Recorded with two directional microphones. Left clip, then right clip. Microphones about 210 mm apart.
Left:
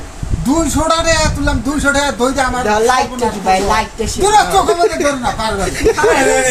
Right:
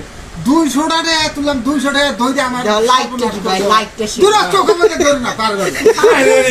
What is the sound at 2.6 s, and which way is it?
Speech, 25° left (ahead or behind).